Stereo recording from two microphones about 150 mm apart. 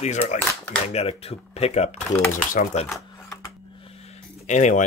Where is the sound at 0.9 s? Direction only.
45° left (ahead or behind).